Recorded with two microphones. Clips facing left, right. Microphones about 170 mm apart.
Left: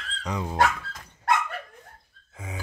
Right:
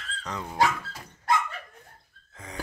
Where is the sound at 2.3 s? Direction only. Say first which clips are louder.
Even; 5° left (ahead or behind).